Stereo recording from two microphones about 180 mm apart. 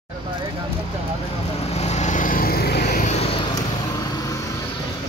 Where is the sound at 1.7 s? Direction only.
35° left (ahead or behind); by 3.1 s 60° left (ahead or behind).